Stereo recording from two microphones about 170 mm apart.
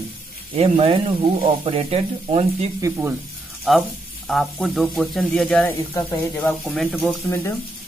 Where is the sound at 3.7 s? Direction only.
Centre (ahead or behind).